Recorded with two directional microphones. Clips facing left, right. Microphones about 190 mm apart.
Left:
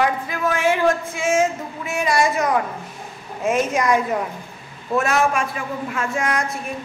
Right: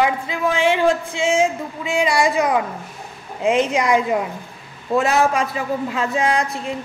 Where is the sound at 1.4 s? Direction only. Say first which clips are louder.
Right 2 dB; 15° right (ahead or behind).